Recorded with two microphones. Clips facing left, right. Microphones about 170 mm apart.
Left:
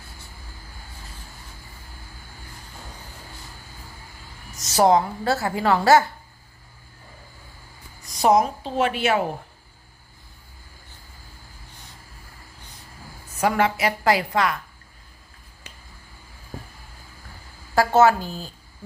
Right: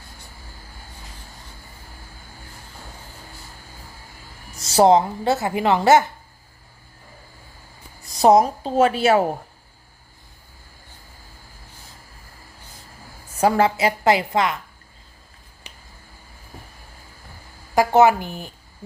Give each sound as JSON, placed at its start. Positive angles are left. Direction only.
{"t": 4.6, "sound": "a woman's voice", "side_deg": -25}
{"t": 8.1, "sound": "a woman's voice", "side_deg": -35}
{"t": 13.4, "sound": "a woman's voice", "side_deg": -30}
{"t": 17.7, "sound": "a woman's voice", "side_deg": -15}